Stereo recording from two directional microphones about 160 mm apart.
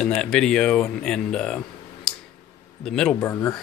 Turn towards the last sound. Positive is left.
turn(degrees=20)  # may be behind; listen again after turning